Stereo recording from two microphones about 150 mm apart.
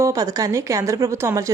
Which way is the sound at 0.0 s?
20° right (ahead or behind).